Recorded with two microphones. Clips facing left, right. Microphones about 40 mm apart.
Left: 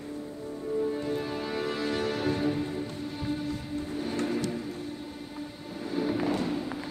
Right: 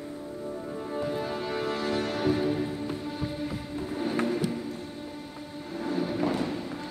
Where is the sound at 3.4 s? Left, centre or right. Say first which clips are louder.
Even; centre.